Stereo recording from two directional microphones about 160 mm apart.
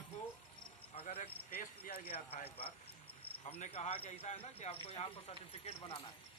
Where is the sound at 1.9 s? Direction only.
70° left (ahead or behind).